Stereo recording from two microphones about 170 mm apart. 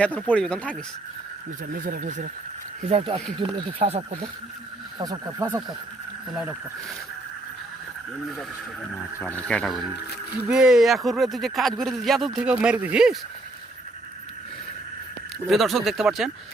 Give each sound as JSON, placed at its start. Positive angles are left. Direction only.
{"t": 0.0, "sound": "speech", "side_deg": 5}
{"t": 1.8, "sound": "speech", "side_deg": -50}
{"t": 3.3, "sound": "speech", "side_deg": -35}
{"t": 4.9, "sound": "speech", "side_deg": -20}
{"t": 6.3, "sound": "speech", "side_deg": -5}
{"t": 9.2, "sound": "speech", "side_deg": 10}
{"t": 15.4, "sound": "speech", "side_deg": 0}